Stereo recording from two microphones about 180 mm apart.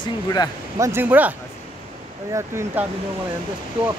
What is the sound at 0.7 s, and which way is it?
Speech, 15° right (ahead or behind).